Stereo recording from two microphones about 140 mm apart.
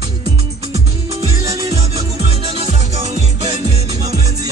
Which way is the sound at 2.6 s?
50° right (ahead or behind).